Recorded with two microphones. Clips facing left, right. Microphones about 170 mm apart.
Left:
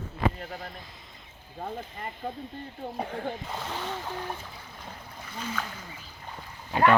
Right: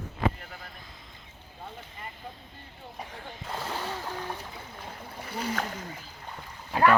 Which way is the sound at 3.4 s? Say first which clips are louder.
Even; 5° right (ahead or behind).